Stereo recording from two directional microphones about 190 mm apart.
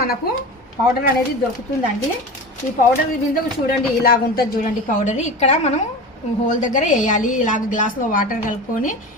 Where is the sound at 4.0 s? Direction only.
50° left (ahead or behind).